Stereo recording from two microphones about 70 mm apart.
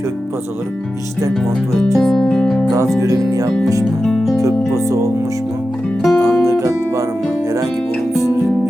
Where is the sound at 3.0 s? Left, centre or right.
Right.